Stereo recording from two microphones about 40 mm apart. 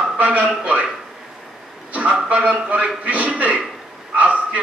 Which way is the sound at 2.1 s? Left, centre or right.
Right.